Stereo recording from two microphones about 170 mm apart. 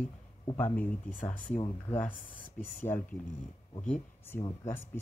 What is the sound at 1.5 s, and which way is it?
Speech, 35° left (ahead or behind).